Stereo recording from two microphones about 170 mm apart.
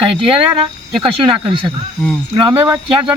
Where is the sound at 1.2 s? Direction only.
30° right (ahead or behind).